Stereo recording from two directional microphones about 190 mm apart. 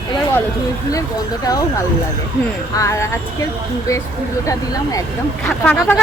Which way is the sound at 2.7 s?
15° left (ahead or behind).